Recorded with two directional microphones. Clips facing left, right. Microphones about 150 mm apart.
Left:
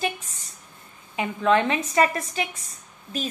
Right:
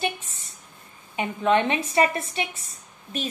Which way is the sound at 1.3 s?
25° right (ahead or behind).